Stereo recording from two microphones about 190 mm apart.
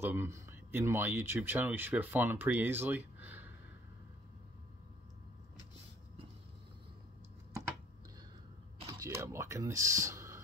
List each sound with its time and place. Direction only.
0.0 s speech: 10° right (ahead or behind)
8.8 s computer keyboard: 15° right (ahead or behind)